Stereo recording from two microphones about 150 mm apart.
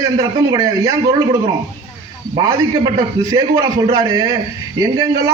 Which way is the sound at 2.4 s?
25° right (ahead or behind).